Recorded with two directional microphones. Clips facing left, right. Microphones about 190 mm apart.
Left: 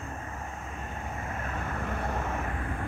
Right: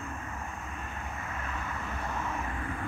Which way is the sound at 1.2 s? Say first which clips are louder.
Left 4 dB; 40° left (ahead or behind).